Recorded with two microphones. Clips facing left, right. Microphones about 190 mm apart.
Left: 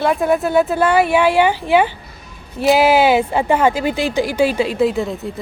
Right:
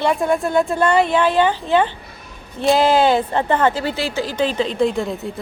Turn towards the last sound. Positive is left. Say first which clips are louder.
# left 2 dB
turn(degrees=0)  # may be behind; listen again after turning